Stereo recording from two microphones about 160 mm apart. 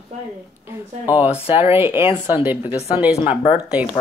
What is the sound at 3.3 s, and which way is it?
Speech, 35° left (ahead or behind).